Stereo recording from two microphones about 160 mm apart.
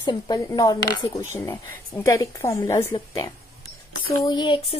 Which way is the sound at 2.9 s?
30° left (ahead or behind).